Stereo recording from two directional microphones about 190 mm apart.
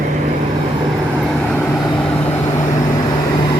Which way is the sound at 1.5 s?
5° left (ahead or behind).